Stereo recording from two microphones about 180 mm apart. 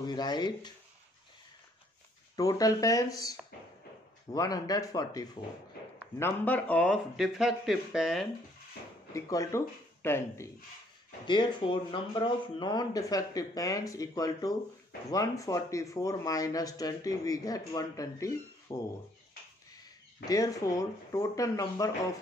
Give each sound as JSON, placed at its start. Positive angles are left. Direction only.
{"t": 0.0, "sound": "speech", "side_deg": 25}
{"t": 2.3, "sound": "speech", "side_deg": 20}
{"t": 9.1, "sound": "speech", "side_deg": 15}
{"t": 11.2, "sound": "speech", "side_deg": 25}
{"t": 20.2, "sound": "speech", "side_deg": 20}